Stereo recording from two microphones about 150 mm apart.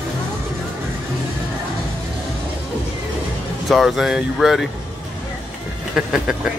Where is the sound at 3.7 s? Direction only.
Centre (ahead or behind).